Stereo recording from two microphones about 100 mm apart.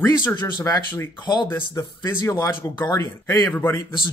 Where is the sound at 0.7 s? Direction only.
30° left (ahead or behind).